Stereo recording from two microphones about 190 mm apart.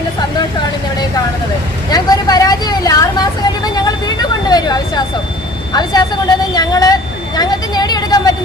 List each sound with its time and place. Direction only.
1.9 s vehicle: 20° left (ahead or behind)
5.7 s speech: 20° left (ahead or behind)
7.3 s vehicle: 20° left (ahead or behind)